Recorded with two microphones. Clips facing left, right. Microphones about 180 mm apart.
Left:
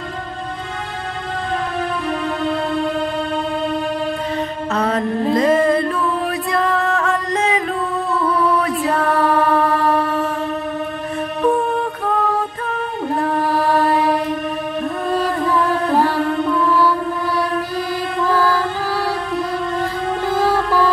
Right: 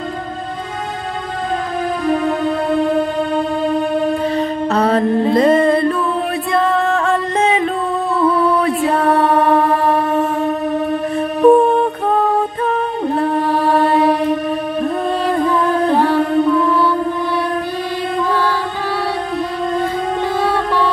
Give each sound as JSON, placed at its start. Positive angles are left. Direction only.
{"t": 4.4, "sound": "mantra", "side_deg": -35}
{"t": 6.5, "sound": "music", "side_deg": -25}
{"t": 8.6, "sound": "music", "side_deg": -25}
{"t": 11.4, "sound": "music", "side_deg": -30}
{"t": 13.7, "sound": "mantra", "side_deg": -25}